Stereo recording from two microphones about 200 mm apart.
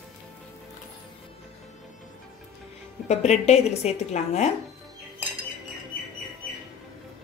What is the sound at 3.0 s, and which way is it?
A woman's voice, 35° left (ahead or behind).